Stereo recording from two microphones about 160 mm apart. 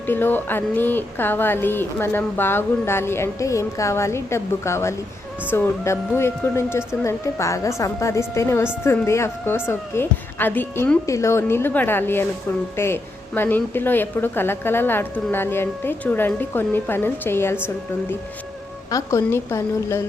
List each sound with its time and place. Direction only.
0.0 s speech: 15° left (ahead or behind)
18.9 s a woman's voice: 20° left (ahead or behind)